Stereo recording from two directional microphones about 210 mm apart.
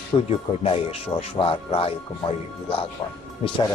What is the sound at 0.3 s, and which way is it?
Speech, 30° left (ahead or behind).